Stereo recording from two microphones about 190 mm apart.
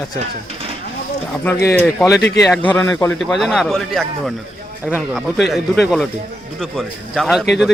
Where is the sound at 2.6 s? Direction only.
10° left (ahead or behind).